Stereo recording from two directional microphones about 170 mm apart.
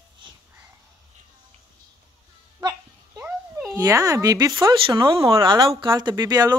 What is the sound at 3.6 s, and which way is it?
Speech, 20° right (ahead or behind).